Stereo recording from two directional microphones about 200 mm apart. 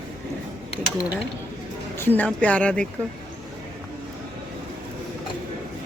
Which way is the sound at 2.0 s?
10° left (ahead or behind).